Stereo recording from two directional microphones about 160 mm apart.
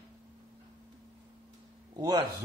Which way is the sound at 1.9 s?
20° right (ahead or behind).